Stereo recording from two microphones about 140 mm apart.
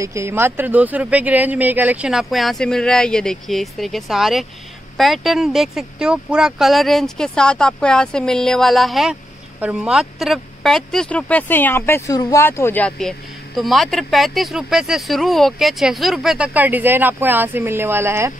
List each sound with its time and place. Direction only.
0.0 s speech: 20° right (ahead or behind)